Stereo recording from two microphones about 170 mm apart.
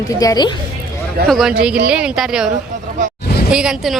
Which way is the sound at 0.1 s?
20° left (ahead or behind).